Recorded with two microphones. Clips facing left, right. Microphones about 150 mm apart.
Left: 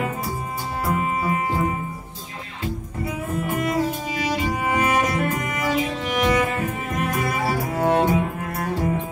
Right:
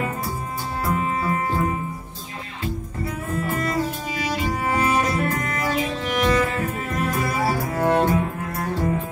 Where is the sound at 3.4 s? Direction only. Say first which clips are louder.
Left 1 dB; 15° left (ahead or behind).